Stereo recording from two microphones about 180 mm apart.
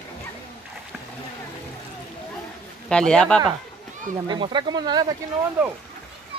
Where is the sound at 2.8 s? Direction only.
5° left (ahead or behind).